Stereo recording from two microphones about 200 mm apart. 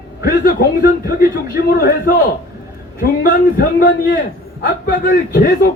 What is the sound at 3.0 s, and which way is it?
A man's voice, 45° left (ahead or behind).